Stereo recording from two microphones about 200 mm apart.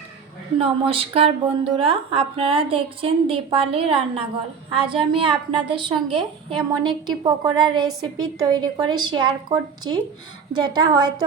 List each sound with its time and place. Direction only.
0.6 s a woman's voice: 30° right (ahead or behind)